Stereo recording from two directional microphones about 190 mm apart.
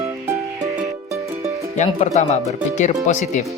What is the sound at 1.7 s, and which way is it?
Speech, 40° left (ahead or behind).